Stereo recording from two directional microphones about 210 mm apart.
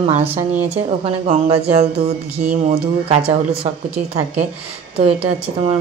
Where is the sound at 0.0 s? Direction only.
30° right (ahead or behind).